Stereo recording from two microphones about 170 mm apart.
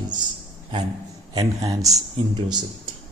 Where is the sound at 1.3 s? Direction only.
30° right (ahead or behind).